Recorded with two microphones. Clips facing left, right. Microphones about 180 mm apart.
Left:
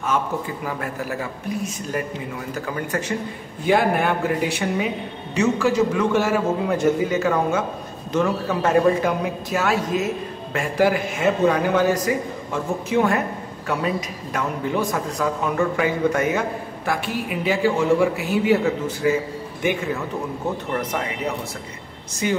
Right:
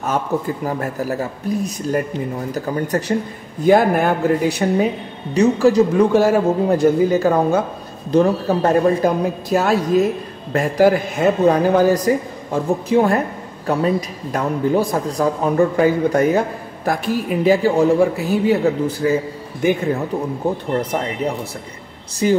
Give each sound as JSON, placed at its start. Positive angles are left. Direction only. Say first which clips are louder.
{"t": 0.7, "sound": "a man's voice", "louder": "right 4 dB", "side_deg": -40}
{"t": 22.2, "sound": "a man's voice", "louder": "right 7 dB", "side_deg": -40}